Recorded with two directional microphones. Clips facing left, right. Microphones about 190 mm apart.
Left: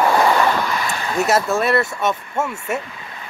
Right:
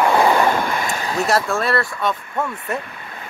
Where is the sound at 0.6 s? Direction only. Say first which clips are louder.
Even; 50° right (ahead or behind).